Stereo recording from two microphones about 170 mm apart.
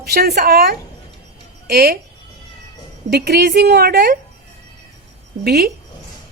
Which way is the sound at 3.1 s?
70° right (ahead or behind).